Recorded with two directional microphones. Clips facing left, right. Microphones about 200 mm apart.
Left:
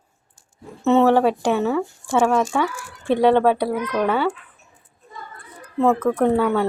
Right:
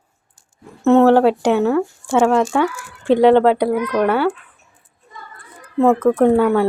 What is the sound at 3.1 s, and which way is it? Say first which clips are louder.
Speech: right 5 dB; 90° right.